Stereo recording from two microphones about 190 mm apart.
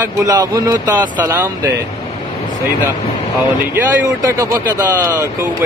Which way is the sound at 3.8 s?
15° right (ahead or behind).